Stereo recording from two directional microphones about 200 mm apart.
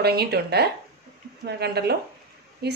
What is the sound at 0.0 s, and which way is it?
A woman's voice, 55° right (ahead or behind).